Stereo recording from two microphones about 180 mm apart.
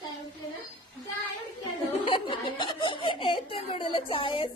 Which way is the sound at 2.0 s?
25° left (ahead or behind).